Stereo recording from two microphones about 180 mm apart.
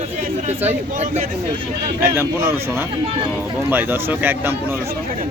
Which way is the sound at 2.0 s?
10° right (ahead or behind).